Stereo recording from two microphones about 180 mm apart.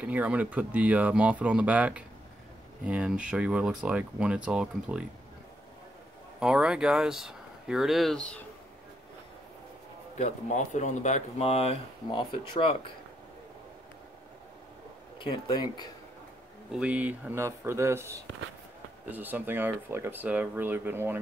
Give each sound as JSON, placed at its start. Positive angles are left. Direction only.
{"t": 0.0, "sound": "speech", "side_deg": -10}
{"t": 6.4, "sound": "speech", "side_deg": -5}
{"t": 10.1, "sound": "speech", "side_deg": 40}
{"t": 15.1, "sound": "speech", "side_deg": 25}
{"t": 16.7, "sound": "speech", "side_deg": -5}